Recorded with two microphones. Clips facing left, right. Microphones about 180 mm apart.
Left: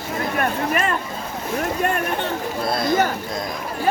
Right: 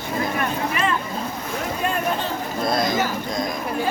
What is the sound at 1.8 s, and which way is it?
Speech, 65° left (ahead or behind).